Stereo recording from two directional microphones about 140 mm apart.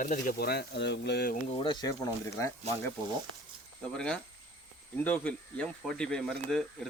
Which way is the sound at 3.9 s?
5° left (ahead or behind).